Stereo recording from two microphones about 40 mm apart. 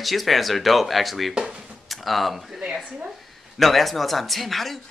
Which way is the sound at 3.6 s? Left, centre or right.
Centre.